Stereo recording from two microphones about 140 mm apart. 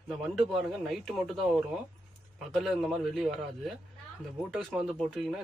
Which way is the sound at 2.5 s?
Centre (ahead or behind).